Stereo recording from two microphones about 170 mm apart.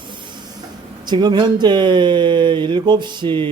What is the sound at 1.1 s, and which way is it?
Speech, 25° right (ahead or behind).